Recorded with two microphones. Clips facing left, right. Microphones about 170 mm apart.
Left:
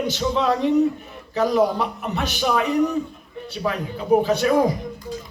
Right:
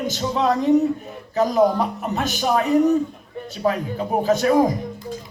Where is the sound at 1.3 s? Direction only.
45° right (ahead or behind).